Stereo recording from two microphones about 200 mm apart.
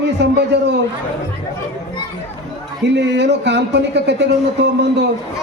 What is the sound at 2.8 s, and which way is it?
A man's voice, 60° right (ahead or behind).